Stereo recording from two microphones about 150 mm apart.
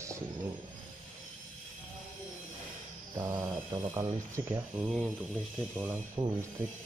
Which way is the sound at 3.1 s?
20° right (ahead or behind).